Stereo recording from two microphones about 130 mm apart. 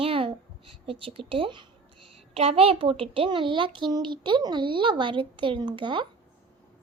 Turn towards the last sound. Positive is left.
turn(degrees=-40)  # may be behind; listen again after turning